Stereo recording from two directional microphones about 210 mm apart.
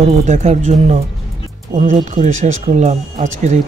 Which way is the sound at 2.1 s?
35° right (ahead or behind).